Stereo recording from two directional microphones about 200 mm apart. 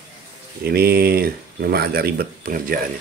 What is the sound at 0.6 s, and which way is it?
Speech, 50° right (ahead or behind).